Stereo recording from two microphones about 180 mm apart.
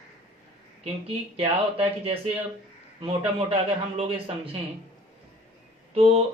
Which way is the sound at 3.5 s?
30° right (ahead or behind).